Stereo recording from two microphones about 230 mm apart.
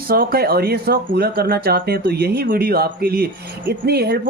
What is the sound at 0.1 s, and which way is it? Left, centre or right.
Speech, right.